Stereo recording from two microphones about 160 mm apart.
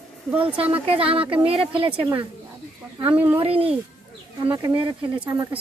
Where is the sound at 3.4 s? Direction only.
35° right (ahead or behind).